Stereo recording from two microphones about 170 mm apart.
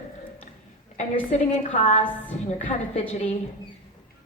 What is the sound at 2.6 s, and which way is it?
Speech, 45° left (ahead or behind).